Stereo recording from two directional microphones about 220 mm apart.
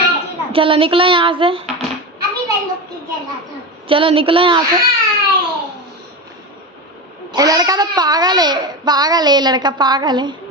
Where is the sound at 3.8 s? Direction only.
25° right (ahead or behind).